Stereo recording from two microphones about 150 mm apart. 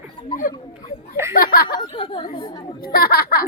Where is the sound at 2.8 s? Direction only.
80° left.